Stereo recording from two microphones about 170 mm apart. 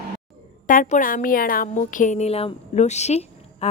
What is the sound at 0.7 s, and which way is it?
A woman's voice, 50° left (ahead or behind).